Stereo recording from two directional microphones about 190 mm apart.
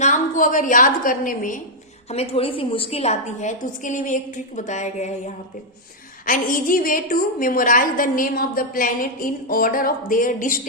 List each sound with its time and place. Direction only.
0.0 s a woman's voice: 45° left (ahead or behind)
2.0 s a woman's voice: 30° left (ahead or behind)